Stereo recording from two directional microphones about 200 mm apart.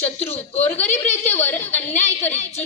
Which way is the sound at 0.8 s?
35° left (ahead or behind).